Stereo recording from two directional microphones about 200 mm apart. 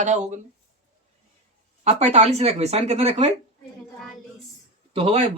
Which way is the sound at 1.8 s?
30° right (ahead or behind).